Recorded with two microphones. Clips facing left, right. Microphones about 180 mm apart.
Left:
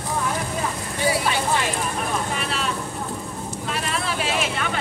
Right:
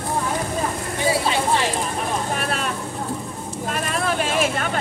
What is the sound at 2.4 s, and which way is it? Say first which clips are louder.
Vehicle: right 2 dB; 50° right (ahead or behind).